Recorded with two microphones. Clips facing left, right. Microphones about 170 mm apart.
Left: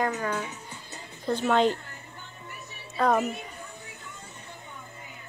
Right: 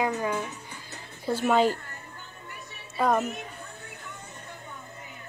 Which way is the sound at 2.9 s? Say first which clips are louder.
Left 1 dB; centre (ahead or behind).